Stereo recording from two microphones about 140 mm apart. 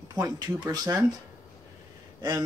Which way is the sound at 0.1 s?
25° right (ahead or behind).